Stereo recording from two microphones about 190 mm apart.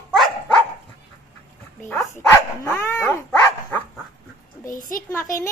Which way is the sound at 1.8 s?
10° left (ahead or behind).